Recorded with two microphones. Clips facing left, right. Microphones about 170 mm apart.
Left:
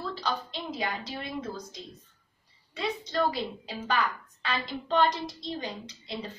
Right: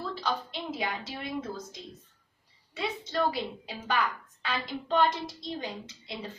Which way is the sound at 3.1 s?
5° right (ahead or behind).